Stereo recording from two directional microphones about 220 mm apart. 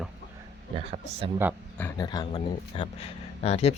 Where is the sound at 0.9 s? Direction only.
25° right (ahead or behind).